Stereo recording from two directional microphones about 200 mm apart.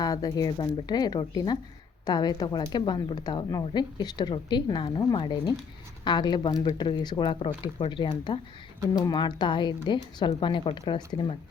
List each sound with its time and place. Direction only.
0.0 s speech: 20° left (ahead or behind)